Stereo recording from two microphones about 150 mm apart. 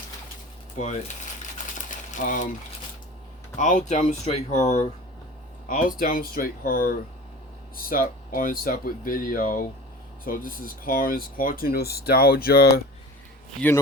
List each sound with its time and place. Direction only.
0.8 s speech: 50° left (ahead or behind)
1.9 s a sound: 55° left (ahead or behind)
3.6 s speech: 55° left (ahead or behind)
5.6 s speech: 65° left (ahead or behind); by 12.8 s 90° left